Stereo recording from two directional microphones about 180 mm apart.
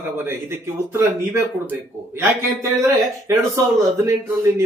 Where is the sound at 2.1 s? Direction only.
15° right (ahead or behind).